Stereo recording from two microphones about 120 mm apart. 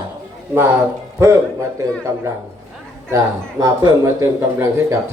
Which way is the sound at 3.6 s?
20° right (ahead or behind).